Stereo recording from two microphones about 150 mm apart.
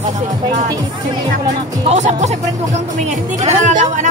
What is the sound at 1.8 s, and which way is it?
Speech, 50° right (ahead or behind).